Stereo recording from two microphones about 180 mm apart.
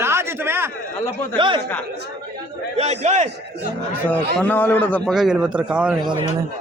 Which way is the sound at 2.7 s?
35° right (ahead or behind).